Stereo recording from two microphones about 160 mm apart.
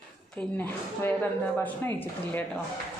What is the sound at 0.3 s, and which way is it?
A woman's voice, 10° left (ahead or behind).